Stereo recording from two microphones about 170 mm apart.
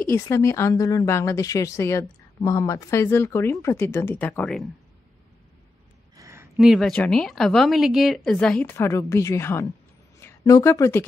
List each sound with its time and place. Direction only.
0.0 s a woman's voice: 15° left (ahead or behind)
6.1 s a sound: 20° right (ahead or behind)
6.5 s a woman's voice: centre (ahead or behind); by 11.1 s 15° left (ahead or behind)